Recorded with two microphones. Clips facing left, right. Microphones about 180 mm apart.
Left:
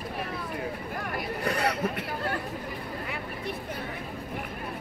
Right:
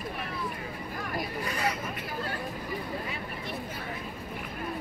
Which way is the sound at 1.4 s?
65° left (ahead or behind).